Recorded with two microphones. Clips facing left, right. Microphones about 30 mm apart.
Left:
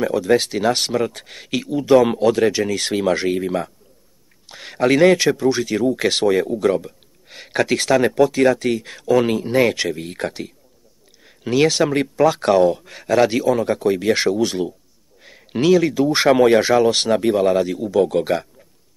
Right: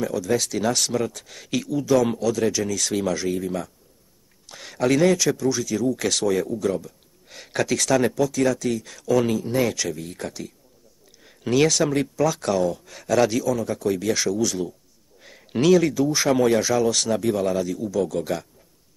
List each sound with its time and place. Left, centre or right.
0.0 s speech: left
4.5 s speech: left
7.2 s speech: left
11.2 s a sound: centre
11.6 s speech: left
13.4 s a man's voice: left
15.2 s a sound: centre
15.9 s speech: left